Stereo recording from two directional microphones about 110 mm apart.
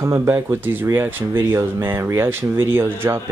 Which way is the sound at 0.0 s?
25° right (ahead or behind).